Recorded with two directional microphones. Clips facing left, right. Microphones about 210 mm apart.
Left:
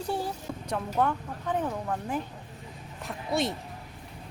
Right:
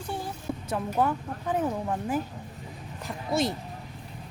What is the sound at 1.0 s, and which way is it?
Speech, 5° right (ahead or behind).